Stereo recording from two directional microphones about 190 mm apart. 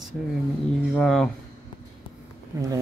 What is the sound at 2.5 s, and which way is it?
Speech, 15° right (ahead or behind).